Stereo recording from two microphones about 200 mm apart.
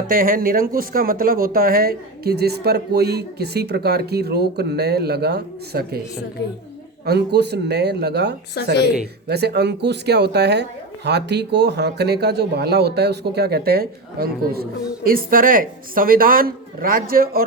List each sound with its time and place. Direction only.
0.1 s speech: 45° right (ahead or behind)
7.0 s speech: 55° right (ahead or behind)